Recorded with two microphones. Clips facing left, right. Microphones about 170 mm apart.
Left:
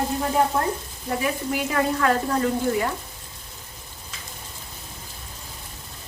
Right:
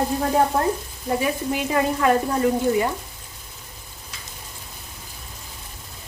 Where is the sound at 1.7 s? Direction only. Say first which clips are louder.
Right 2 dB; 20° right (ahead or behind).